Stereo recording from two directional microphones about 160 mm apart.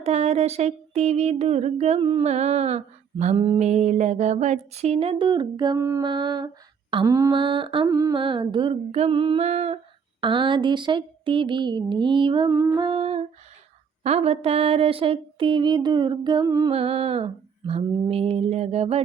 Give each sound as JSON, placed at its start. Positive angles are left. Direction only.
{"t": 0.0, "sound": "humming", "side_deg": -40}
{"t": 2.2, "sound": "speech", "side_deg": -45}
{"t": 5.8, "sound": "lullaby", "side_deg": -20}
{"t": 6.9, "sound": "humming", "side_deg": -20}
{"t": 12.5, "sound": "music", "side_deg": -15}
{"t": 12.8, "sound": "humming", "side_deg": -35}
{"t": 16.7, "sound": "humming", "side_deg": -35}